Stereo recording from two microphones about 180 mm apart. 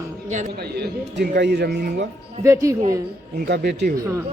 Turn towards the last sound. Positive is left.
turn(degrees=-65)  # may be behind; listen again after turning